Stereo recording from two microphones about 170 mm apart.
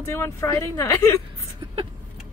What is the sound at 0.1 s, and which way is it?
Speech, 15° left (ahead or behind).